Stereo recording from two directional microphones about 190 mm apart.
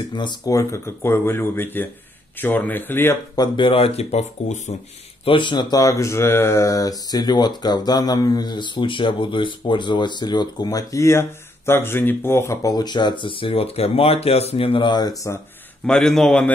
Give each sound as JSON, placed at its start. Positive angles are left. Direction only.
{"t": 0.1, "sound": "speech", "side_deg": 25}
{"t": 3.5, "sound": "speech", "side_deg": 30}
{"t": 15.9, "sound": "a man's voice", "side_deg": 0}